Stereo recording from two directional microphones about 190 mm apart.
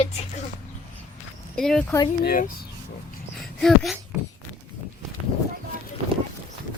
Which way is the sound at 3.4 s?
Centre (ahead or behind).